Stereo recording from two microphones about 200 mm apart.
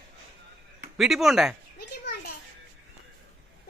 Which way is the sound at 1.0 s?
Centre (ahead or behind).